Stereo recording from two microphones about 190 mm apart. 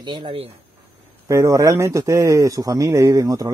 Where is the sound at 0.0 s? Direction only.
25° right (ahead or behind).